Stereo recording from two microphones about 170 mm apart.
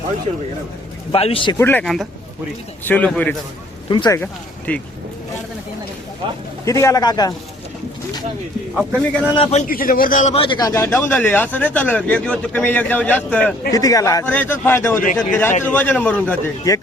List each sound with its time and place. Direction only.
1.1 s speech: 35° left (ahead or behind)
1.5 s speech: 10° left (ahead or behind)
3.8 s speech: 25° left (ahead or behind)
4.2 s speech: 10° left (ahead or behind)
6.2 s speech: 30° right (ahead or behind)
6.7 s speech: 20° left (ahead or behind)
8.7 s a man's voice: centre (ahead or behind)
9.3 s speech: 35° left (ahead or behind)
9.6 s a man's voice: 60° left (ahead or behind)
10.3 s speech: 30° left (ahead or behind); by 13.5 s 10° left (ahead or behind)
13.7 s speech: 20° left (ahead or behind)
16.7 s speech: 20° left (ahead or behind)